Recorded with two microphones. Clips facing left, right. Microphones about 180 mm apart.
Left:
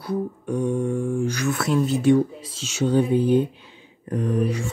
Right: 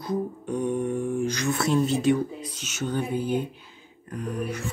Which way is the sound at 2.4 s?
90° left.